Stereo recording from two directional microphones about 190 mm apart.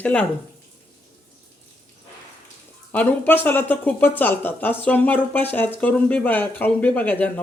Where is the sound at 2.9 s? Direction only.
10° left (ahead or behind).